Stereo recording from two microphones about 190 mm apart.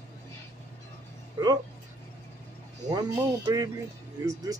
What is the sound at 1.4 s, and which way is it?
Speech, 25° right (ahead or behind).